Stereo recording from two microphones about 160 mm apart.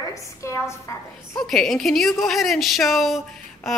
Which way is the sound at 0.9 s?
20° left (ahead or behind).